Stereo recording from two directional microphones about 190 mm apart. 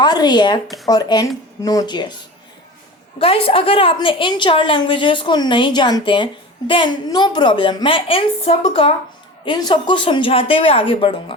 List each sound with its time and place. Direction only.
0.0 s a woman's voice: 20° left (ahead or behind)
3.2 s a woman's voice: 30° left (ahead or behind)